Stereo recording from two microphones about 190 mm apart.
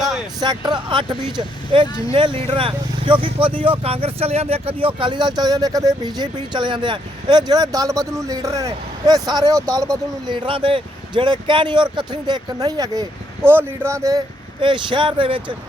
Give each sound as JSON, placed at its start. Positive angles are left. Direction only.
{"t": 0.3, "sound": "speech", "side_deg": -20}